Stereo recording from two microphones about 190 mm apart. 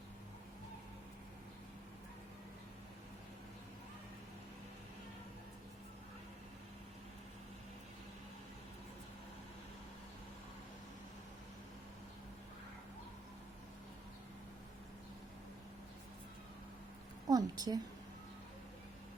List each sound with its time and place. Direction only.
17.2 s a woman's voice: 20° right (ahead or behind)